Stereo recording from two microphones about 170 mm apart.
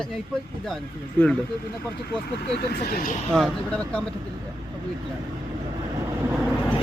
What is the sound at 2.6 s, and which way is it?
Speech, 65° left (ahead or behind).